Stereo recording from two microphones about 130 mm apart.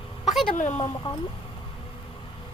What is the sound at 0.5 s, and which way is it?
Speech, 65° left (ahead or behind).